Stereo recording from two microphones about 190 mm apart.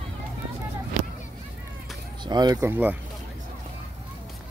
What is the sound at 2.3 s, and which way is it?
Speech, 20° right (ahead or behind).